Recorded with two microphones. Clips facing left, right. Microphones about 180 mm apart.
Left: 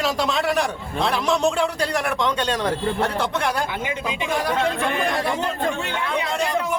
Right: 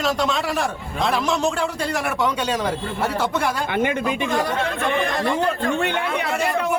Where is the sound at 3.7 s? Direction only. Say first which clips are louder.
Right 6 dB; 60° right (ahead or behind).